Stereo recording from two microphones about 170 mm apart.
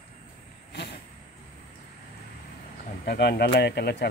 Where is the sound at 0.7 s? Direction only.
85° left.